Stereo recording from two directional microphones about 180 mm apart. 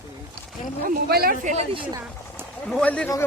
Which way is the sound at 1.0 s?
60° right (ahead or behind).